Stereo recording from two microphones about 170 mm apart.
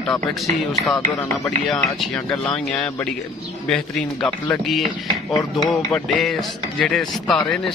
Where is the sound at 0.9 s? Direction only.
15° left (ahead or behind).